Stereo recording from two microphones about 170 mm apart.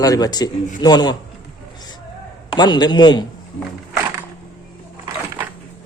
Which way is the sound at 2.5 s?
25° left (ahead or behind).